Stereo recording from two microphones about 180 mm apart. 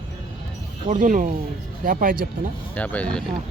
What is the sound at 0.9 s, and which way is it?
Speech, 45° right (ahead or behind).